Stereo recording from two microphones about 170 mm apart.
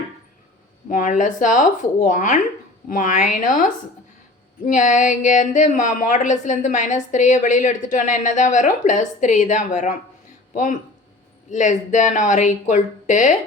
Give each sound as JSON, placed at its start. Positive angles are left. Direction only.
{"t": 0.9, "sound": "speech", "side_deg": 50}